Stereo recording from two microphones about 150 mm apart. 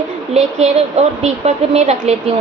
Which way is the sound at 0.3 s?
45° right (ahead or behind).